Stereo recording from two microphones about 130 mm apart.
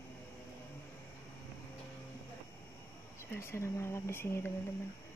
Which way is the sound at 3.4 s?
20° left (ahead or behind).